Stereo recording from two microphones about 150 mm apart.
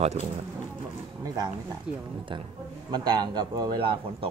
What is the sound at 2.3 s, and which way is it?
A man's voice, 30° right (ahead or behind).